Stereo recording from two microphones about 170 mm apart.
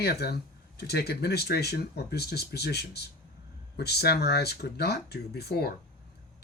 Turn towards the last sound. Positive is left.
turn(degrees=70)  # may be behind; listen again after turning